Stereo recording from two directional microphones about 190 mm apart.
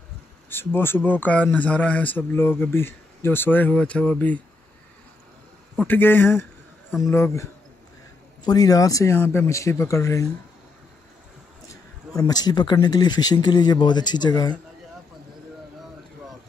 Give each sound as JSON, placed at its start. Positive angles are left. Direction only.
{"t": 0.5, "sound": "speech", "side_deg": 10}
{"t": 5.9, "sound": "speech", "side_deg": 10}
{"t": 8.5, "sound": "speech", "side_deg": 20}
{"t": 12.2, "sound": "speech", "side_deg": 20}